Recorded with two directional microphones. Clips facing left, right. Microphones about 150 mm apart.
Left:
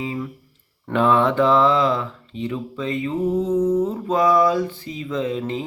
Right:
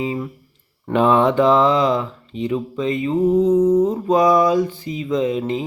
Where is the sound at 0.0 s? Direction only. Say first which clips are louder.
Right 4 dB; 20° right (ahead or behind).